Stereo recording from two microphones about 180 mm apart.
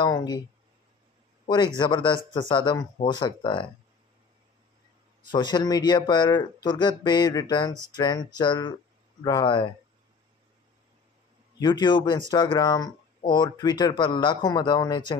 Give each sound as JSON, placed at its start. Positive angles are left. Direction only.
{"t": 0.0, "sound": "speech", "side_deg": 20}
{"t": 1.8, "sound": "speech", "side_deg": 25}
{"t": 5.3, "sound": "speech", "side_deg": 25}
{"t": 11.6, "sound": "speech", "side_deg": 25}